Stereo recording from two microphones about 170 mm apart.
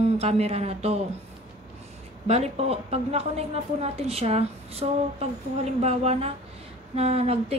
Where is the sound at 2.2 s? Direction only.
40° right (ahead or behind).